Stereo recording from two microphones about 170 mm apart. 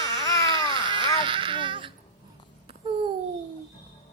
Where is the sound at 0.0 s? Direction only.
20° left (ahead or behind).